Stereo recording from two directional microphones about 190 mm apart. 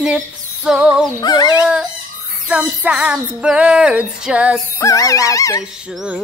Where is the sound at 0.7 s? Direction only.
5° right (ahead or behind).